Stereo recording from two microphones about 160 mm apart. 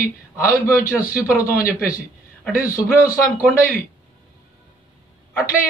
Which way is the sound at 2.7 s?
20° left (ahead or behind).